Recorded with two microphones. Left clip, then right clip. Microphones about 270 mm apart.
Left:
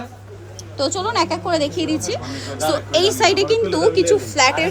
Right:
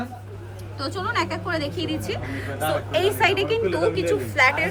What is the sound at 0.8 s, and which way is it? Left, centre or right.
A woman's voice, centre.